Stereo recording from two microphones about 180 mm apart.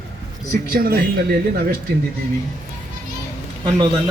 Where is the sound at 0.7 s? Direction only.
55° right (ahead or behind).